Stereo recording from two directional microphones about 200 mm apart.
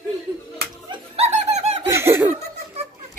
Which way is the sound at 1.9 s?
10° right (ahead or behind).